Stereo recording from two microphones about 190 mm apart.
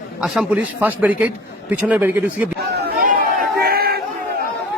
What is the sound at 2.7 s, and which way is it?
Chatter, 50° right (ahead or behind).